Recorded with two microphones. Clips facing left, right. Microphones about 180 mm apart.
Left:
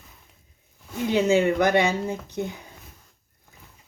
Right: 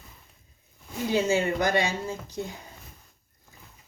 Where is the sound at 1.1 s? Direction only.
65° left (ahead or behind).